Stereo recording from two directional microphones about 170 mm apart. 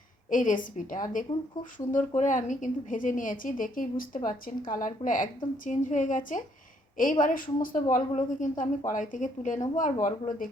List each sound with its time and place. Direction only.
0.3 s a woman's voice: 50° left (ahead or behind)